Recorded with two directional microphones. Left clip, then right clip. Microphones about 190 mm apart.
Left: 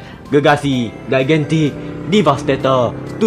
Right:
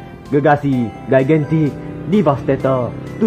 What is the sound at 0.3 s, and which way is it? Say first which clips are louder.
Speech: left 1 dB; centre (ahead or behind).